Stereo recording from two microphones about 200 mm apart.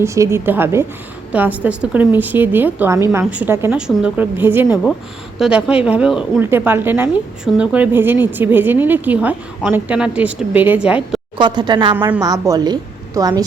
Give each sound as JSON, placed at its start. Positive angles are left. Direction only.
{"t": 0.0, "sound": "a woman's voice", "side_deg": -15}
{"t": 11.3, "sound": "a woman's voice", "side_deg": -20}